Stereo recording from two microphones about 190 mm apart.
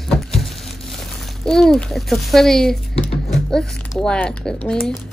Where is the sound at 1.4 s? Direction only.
Centre (ahead or behind).